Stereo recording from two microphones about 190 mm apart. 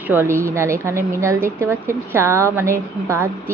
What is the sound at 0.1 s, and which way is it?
A woman's voice, 15° right (ahead or behind).